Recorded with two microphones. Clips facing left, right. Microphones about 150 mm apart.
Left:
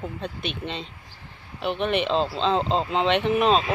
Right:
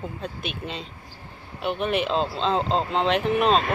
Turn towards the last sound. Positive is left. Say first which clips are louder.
# even
turn(degrees=0)  # may be behind; listen again after turning